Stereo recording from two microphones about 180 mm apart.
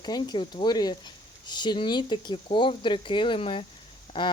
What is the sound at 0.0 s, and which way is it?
Speech, 25° left (ahead or behind).